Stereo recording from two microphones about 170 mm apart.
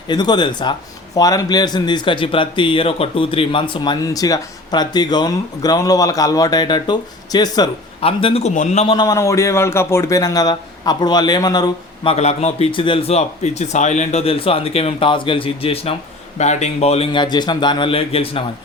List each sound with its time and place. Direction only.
0.1 s speech: 25° left (ahead or behind)
8.0 s a man's voice: 35° left (ahead or behind)
8.9 s speech: 25° left (ahead or behind)
12.1 s a man's voice: 40° left (ahead or behind)